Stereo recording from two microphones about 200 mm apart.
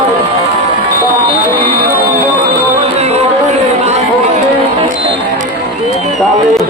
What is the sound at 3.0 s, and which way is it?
Music, 30° right (ahead or behind).